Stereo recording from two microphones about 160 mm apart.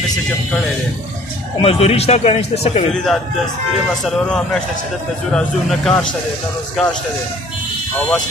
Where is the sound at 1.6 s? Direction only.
35° left (ahead or behind).